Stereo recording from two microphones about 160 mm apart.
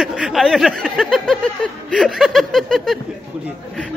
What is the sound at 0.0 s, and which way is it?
Speech, centre (ahead or behind).